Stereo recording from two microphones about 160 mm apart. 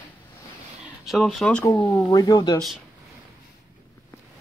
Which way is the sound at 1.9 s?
20° left (ahead or behind).